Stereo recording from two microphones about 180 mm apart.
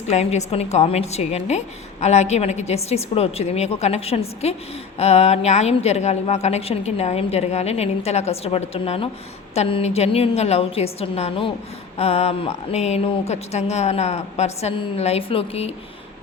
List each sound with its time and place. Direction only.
0.1 s a woman's voice: 40° left (ahead or behind)